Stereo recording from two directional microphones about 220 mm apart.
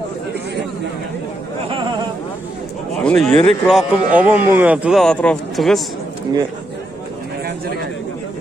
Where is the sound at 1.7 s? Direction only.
20° right (ahead or behind).